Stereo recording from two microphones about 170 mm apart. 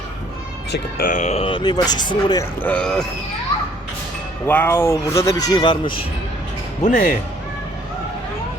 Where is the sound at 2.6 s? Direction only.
10° left (ahead or behind).